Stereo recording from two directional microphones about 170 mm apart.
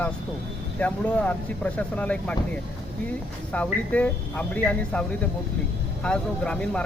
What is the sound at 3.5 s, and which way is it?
Speech, 10° left (ahead or behind).